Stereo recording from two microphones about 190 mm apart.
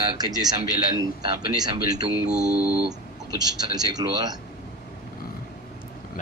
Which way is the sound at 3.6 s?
20° right (ahead or behind).